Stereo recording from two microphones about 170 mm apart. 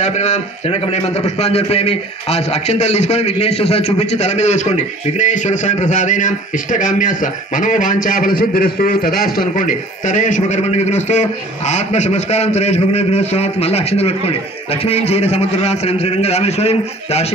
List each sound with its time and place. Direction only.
0.0 s a man's voice: 45° left (ahead or behind)